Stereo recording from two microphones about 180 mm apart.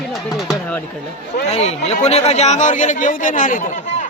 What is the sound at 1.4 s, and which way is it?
Speech, 40° left (ahead or behind).